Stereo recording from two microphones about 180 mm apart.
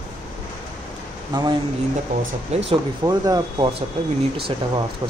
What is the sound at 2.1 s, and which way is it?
Speech, 45° right (ahead or behind).